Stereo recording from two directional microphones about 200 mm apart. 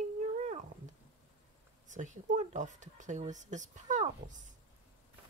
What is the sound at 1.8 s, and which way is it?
Speech, 40° right (ahead or behind).